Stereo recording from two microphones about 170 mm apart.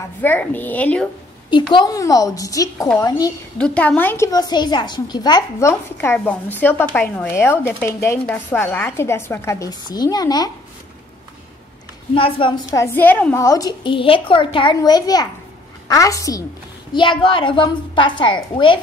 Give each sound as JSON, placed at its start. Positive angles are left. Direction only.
{"t": 0.2, "sound": "speech", "side_deg": 10}
{"t": 1.5, "sound": "a woman's voice", "side_deg": 25}
{"t": 3.5, "sound": "a woman's voice", "side_deg": 5}
{"t": 12.1, "sound": "a woman's voice", "side_deg": 30}
{"t": 12.7, "sound": "a woman's voice", "side_deg": 15}